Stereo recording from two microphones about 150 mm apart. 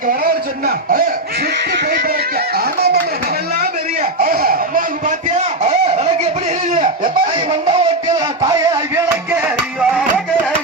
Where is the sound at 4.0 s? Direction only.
75° right (ahead or behind); by 7.1 s 55° right (ahead or behind).